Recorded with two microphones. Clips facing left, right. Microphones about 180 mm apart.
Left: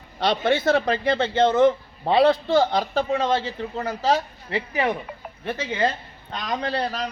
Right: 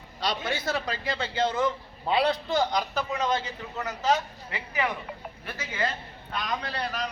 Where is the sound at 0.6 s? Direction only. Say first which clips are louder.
Left 10 dB; 55° left (ahead or behind).